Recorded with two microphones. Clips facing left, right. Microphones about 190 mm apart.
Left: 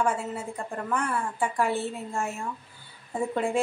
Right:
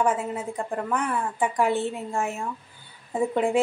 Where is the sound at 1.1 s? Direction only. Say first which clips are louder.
Right 3 dB; 15° right (ahead or behind).